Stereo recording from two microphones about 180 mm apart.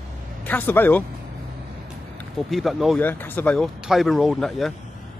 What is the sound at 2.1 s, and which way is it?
Speech, centre (ahead or behind).